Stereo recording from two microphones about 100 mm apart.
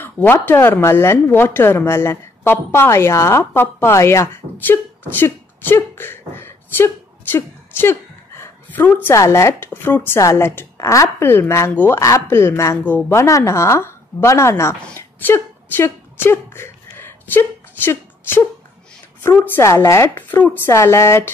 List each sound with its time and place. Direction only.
0.0 s speech: 20° left (ahead or behind)
4.6 s beatboxing: 20° left (ahead or behind)
9.7 s speech: 20° left (ahead or behind)
15.0 s a sound: 20° left (ahead or behind)
19.3 s speech: 20° left (ahead or behind)
20.2 s a woman's voice: 20° left (ahead or behind)
20.7 s speech: 30° left (ahead or behind)